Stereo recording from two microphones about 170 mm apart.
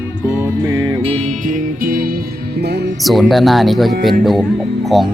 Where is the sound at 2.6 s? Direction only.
75° right (ahead or behind).